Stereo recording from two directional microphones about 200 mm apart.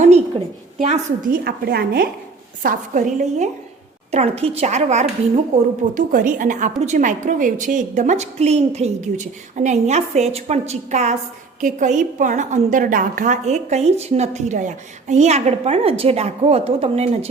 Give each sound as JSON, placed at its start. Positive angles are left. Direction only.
{"t": 0.0, "sound": "a woman's voice", "side_deg": -35}
{"t": 1.5, "sound": "a woman's voice", "side_deg": -55}
{"t": 2.6, "sound": "a woman's voice", "side_deg": -40}